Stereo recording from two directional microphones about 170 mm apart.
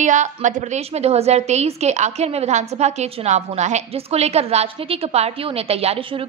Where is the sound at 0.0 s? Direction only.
45° right (ahead or behind).